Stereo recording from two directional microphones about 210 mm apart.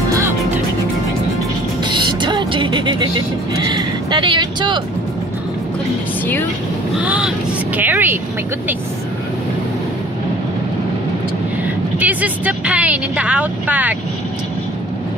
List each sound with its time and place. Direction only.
1.9 s music: 20° right (ahead or behind)
3.6 s speech: 20° right (ahead or behind)
7.0 s speech: 5° right (ahead or behind)
11.6 s a woman's voice: 10° right (ahead or behind)